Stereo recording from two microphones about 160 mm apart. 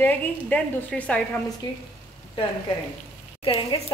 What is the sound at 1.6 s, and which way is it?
Speech, 25° left (ahead or behind).